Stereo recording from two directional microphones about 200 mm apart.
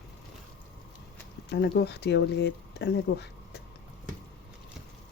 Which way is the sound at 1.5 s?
55° left (ahead or behind).